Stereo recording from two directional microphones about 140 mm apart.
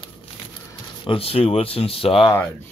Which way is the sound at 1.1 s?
40° left (ahead or behind).